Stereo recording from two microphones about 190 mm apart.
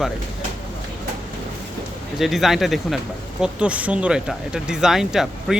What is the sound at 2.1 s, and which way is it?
Speech, centre (ahead or behind).